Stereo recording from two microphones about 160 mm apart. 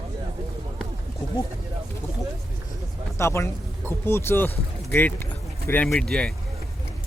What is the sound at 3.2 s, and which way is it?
Speech, 15° left (ahead or behind).